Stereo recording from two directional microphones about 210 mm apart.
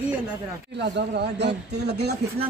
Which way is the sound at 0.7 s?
50° right (ahead or behind).